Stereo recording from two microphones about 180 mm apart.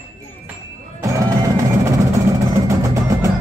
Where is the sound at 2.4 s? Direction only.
15° right (ahead or behind).